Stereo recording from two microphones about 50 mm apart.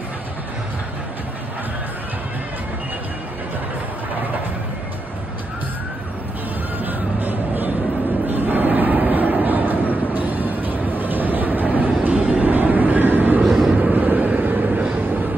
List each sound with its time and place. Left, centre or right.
6.8 s music: right
8.3 s vehicle: right
13.4 s vehicle: centre
13.9 s vehicle: right